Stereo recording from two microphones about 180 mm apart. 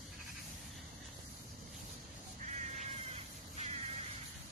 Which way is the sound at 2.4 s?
40° right (ahead or behind).